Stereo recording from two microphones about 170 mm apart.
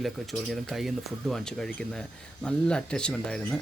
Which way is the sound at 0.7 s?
Centre (ahead or behind).